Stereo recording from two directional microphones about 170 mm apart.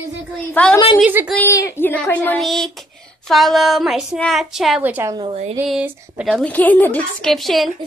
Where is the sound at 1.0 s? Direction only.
10° right (ahead or behind).